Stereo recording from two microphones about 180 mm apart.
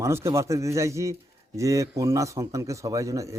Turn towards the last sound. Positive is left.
turn(degrees=-15)  # may be behind; listen again after turning